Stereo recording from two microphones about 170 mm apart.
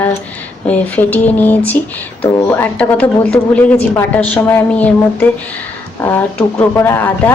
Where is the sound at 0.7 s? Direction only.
10° left (ahead or behind).